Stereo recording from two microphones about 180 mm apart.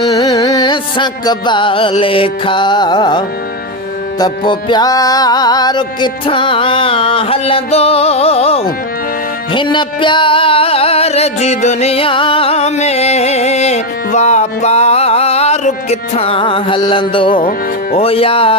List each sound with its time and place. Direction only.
0.1 s music: 20° left (ahead or behind)